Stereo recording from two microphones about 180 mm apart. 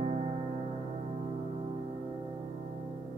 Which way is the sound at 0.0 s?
35° right (ahead or behind).